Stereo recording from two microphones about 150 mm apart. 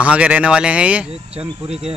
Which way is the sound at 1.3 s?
40° right (ahead or behind).